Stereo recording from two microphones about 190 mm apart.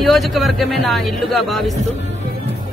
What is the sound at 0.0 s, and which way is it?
Speech, centre (ahead or behind).